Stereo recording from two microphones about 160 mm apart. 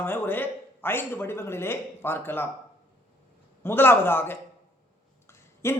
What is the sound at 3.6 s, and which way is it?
Speech, 15° left (ahead or behind).